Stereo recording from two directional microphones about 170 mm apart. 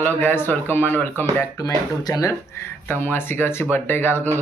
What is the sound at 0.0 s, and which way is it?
Speech, 10° left (ahead or behind).